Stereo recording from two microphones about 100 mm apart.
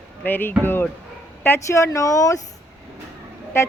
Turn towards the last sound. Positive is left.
turn(degrees=25)  # may be behind; listen again after turning